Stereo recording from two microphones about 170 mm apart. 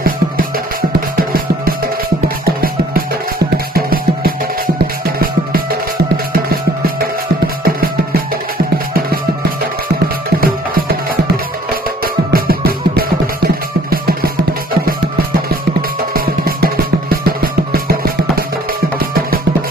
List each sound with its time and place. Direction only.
1.1 s music: 60° right (ahead or behind)
3.8 s music: 60° right (ahead or behind)
10.4 s music: 60° right (ahead or behind)
16.1 s music: 60° right (ahead or behind)